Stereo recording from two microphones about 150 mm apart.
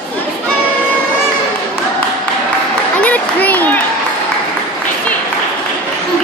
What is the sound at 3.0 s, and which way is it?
Applause, 10° left (ahead or behind).